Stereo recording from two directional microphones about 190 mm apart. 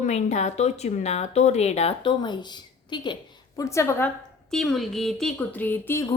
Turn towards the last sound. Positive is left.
turn(degrees=10)  # may be behind; listen again after turning